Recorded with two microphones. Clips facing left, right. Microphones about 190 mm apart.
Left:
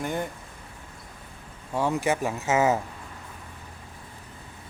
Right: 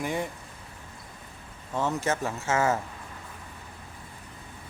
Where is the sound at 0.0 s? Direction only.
Centre (ahead or behind).